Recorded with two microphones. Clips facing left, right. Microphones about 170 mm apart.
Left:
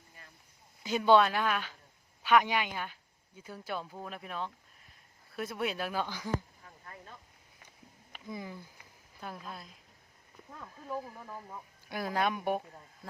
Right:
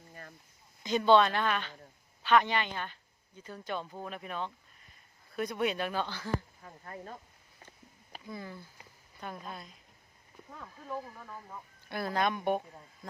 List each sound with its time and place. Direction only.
0.1 s cricket: 50° right (ahead or behind)
0.8 s speech: 5° left (ahead or behind)
6.8 s speech: 40° right (ahead or behind)
8.3 s speech: 15° left (ahead or behind)
9.2 s a woman's voice: centre (ahead or behind)